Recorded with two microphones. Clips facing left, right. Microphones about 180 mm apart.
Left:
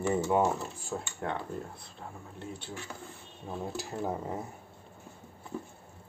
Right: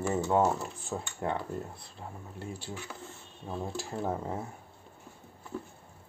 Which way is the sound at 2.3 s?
5° right (ahead or behind).